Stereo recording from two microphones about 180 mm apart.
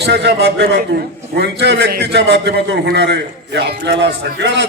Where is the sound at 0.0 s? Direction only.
70° right (ahead or behind).